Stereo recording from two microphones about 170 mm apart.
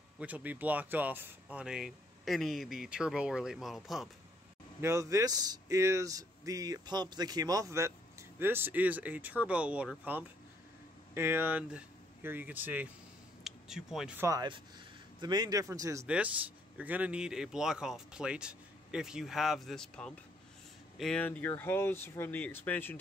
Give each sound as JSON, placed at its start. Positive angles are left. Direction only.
{"t": 0.2, "sound": "speech", "side_deg": -10}
{"t": 4.8, "sound": "speech", "side_deg": -20}
{"t": 13.4, "sound": "a sound", "side_deg": -5}
{"t": 14.2, "sound": "a man's voice", "side_deg": -20}